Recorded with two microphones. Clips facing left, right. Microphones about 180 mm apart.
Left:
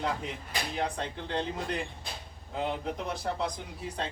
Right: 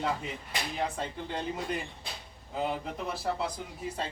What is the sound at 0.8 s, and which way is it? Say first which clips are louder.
Speech: even; 5° right (ahead or behind).